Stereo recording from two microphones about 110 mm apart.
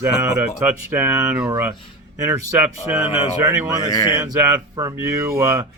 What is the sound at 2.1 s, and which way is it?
Speech, 30° right (ahead or behind).